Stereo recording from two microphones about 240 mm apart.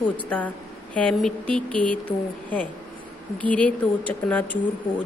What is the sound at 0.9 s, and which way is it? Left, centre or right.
A woman's voice, centre.